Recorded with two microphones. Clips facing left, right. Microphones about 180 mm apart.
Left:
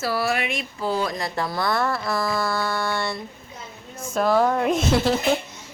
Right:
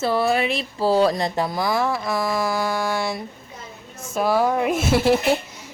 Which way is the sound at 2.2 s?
15° right (ahead or behind).